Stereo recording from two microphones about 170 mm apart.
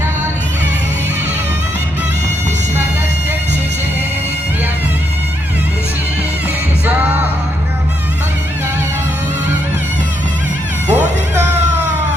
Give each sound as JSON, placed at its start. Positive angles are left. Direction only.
{"t": 10.8, "sound": "cat", "side_deg": -45}